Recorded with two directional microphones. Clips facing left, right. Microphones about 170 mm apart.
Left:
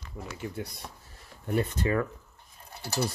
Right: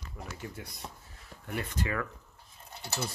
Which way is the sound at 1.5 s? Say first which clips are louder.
Left 7 dB; 35° left (ahead or behind).